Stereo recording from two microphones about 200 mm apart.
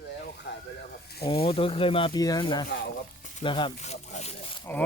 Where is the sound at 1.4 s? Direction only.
30° left (ahead or behind).